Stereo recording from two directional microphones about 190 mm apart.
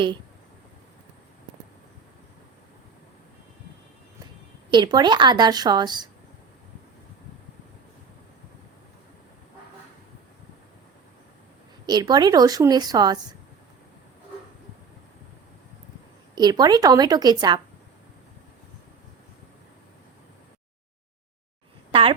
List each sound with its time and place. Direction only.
4.7 s a woman's voice: 25° right (ahead or behind)
11.9 s a woman's voice: 20° right (ahead or behind)
16.3 s a woman's voice: 20° right (ahead or behind)
21.9 s a woman's voice: 30° right (ahead or behind)